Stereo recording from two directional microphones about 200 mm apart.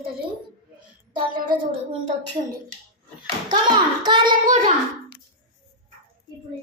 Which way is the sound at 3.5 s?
20° right (ahead or behind).